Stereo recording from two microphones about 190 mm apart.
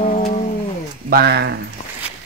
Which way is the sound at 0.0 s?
40° left (ahead or behind).